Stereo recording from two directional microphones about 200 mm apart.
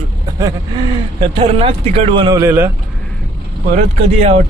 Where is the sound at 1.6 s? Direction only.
30° right (ahead or behind).